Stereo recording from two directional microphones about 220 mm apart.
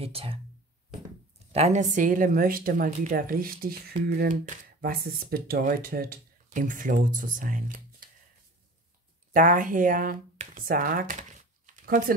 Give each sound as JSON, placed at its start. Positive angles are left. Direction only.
{"t": 0.0, "sound": "speech", "side_deg": -25}
{"t": 1.5, "sound": "a woman's voice", "side_deg": -30}
{"t": 9.3, "sound": "speech", "side_deg": -35}